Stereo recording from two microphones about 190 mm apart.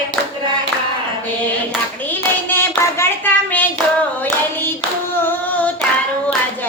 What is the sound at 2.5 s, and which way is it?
Child singing, 10° left (ahead or behind).